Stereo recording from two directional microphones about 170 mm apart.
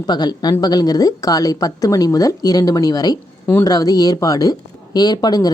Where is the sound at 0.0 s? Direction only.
25° left (ahead or behind).